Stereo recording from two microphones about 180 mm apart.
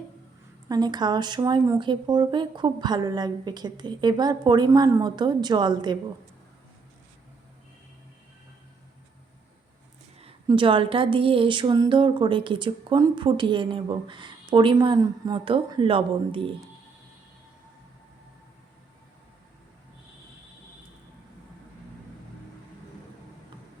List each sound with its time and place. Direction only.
0.7 s speech: 25° right (ahead or behind)
10.2 s speech: 30° right (ahead or behind)